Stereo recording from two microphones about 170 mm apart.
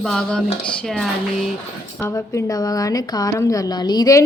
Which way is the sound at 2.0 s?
15° left (ahead or behind).